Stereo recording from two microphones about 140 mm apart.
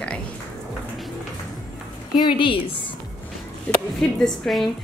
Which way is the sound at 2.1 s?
35° left (ahead or behind).